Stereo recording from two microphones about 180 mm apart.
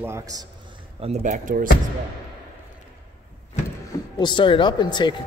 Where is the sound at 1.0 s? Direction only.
40° right (ahead or behind).